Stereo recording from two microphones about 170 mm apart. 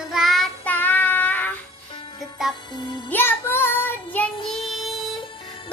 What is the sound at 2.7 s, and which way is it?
Music, 25° left (ahead or behind).